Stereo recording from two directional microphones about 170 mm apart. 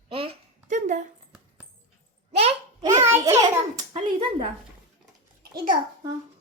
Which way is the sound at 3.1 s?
15° right (ahead or behind).